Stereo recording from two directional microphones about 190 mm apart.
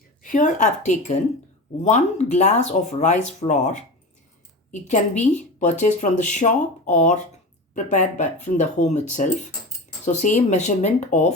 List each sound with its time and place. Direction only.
0.2 s a woman's voice: 45° left (ahead or behind)